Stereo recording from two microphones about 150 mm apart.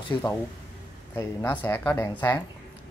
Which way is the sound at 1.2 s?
15° left (ahead or behind).